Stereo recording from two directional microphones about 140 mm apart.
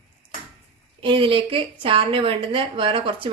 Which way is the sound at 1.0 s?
40° right (ahead or behind).